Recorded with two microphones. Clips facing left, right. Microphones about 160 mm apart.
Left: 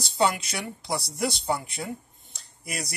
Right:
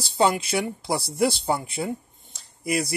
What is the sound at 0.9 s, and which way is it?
Speech, 30° right (ahead or behind).